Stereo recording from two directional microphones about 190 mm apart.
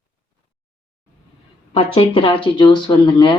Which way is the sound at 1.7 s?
25° left (ahead or behind).